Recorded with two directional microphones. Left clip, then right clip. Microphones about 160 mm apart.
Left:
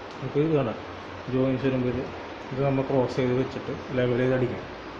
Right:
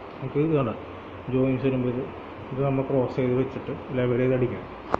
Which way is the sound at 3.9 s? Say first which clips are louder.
Even; 5° left (ahead or behind).